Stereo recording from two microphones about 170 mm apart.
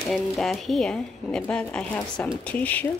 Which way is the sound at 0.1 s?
Centre (ahead or behind).